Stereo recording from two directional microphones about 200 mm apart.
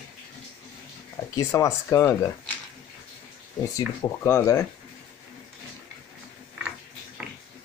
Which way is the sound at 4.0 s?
10° left (ahead or behind).